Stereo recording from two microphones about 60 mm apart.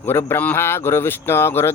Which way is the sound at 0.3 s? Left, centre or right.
Left.